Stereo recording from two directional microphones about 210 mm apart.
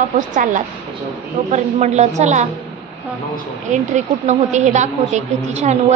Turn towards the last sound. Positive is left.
turn(degrees=-35)  # may be behind; listen again after turning